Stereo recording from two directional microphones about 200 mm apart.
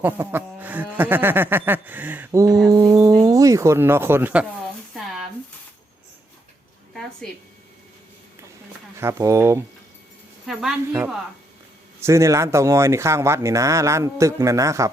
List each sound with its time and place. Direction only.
0.0 s speech: 10° right (ahead or behind)
9.0 s speech: 15° right (ahead or behind)
10.4 s speech: centre (ahead or behind)